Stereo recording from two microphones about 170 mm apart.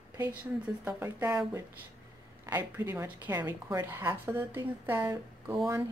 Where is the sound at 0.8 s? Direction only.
10° right (ahead or behind).